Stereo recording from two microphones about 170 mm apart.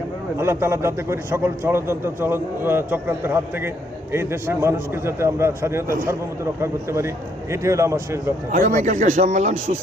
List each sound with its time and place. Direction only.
0.3 s a man's voice: 15° right (ahead or behind)
8.5 s speech: 50° right (ahead or behind)